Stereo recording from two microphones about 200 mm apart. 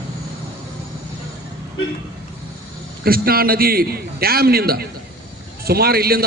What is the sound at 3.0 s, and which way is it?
A man's voice, 50° right (ahead or behind).